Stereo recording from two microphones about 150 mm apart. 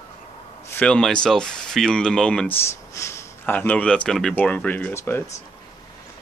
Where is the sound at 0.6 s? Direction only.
10° left (ahead or behind).